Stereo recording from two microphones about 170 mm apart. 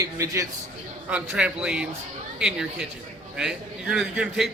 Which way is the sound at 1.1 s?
5° right (ahead or behind).